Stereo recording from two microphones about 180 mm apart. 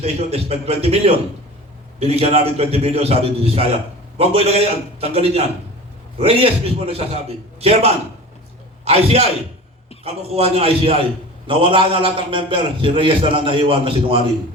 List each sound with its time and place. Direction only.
0.0 s a man's voice: 35° right (ahead or behind)